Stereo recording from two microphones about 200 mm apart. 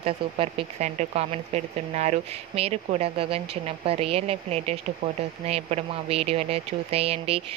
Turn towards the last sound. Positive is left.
turn(degrees=-30)  # may be behind; listen again after turning